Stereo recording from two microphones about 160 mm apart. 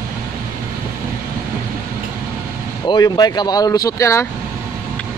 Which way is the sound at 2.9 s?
25° left (ahead or behind).